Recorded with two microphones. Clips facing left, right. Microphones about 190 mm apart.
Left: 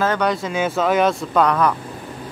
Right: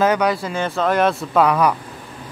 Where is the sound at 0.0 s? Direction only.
10° right (ahead or behind).